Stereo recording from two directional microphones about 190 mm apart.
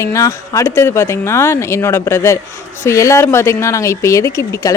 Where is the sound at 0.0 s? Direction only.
15° left (ahead or behind).